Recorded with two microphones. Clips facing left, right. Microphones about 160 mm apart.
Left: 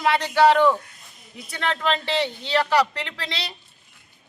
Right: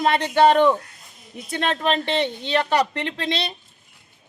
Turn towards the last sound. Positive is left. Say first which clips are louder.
# right 7 dB
turn(degrees=-20)  # may be behind; listen again after turning